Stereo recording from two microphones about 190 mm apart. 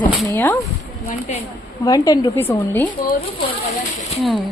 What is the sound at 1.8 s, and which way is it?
A woman's voice, 20° left (ahead or behind).